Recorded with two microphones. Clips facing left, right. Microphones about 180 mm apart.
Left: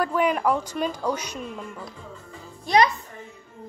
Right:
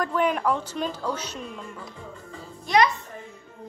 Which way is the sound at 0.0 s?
10° left (ahead or behind).